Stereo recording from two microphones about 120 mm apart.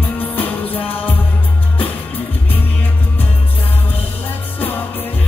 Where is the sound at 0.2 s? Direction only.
15° left (ahead or behind).